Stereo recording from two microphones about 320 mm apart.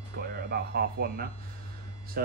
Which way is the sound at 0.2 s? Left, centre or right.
Right.